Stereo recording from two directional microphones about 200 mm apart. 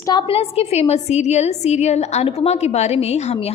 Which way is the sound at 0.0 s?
20° left (ahead or behind).